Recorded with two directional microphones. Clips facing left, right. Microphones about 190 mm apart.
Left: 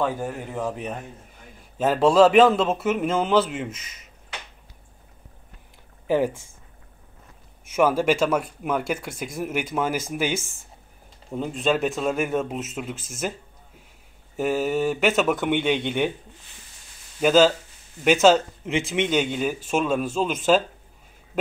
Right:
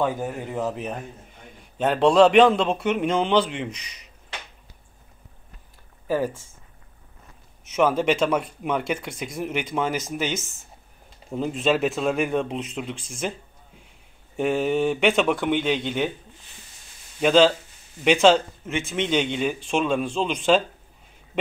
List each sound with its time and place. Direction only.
0.2 s a man's voice: 5° right (ahead or behind)
6.0 s speech: 20° left (ahead or behind)
7.7 s a man's voice: 5° left (ahead or behind)
11.3 s a man's voice: centre (ahead or behind)
14.3 s a man's voice: 5° left (ahead or behind)
17.2 s a man's voice: 5° left (ahead or behind)